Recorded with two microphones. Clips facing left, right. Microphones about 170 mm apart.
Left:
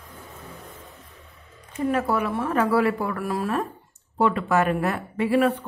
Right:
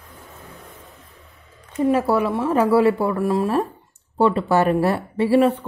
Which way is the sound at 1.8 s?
30° right (ahead or behind).